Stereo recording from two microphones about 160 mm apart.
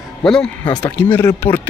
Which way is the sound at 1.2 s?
15° left (ahead or behind).